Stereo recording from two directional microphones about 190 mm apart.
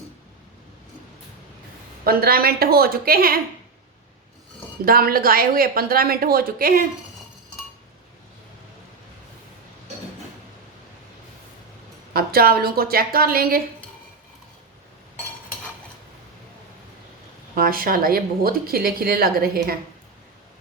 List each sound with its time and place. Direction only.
2.0 s speech: 50° right (ahead or behind)
4.9 s speech: 50° right (ahead or behind)
12.1 s speech: 50° right (ahead or behind)
17.5 s speech: 50° right (ahead or behind)